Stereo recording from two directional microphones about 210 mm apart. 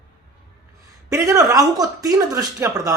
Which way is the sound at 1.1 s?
15° right (ahead or behind).